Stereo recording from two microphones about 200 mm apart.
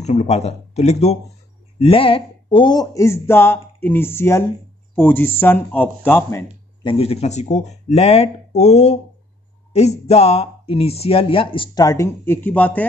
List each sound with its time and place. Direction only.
0.0 s speech: 35° left (ahead or behind); by 6.4 s 10° left (ahead or behind)
6.8 s speech: 25° left (ahead or behind); by 12.8 s 10° left (ahead or behind)